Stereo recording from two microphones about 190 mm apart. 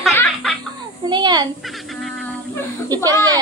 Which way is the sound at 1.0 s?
20° right (ahead or behind).